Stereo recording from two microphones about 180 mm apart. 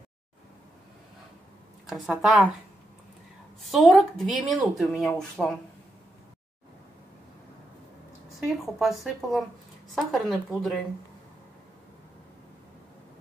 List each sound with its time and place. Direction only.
1.9 s speech: centre (ahead or behind)
3.6 s speech: centre (ahead or behind)
8.4 s speech: centre (ahead or behind)